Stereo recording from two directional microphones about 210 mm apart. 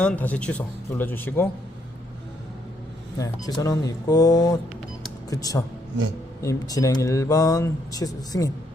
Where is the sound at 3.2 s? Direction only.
15° left (ahead or behind).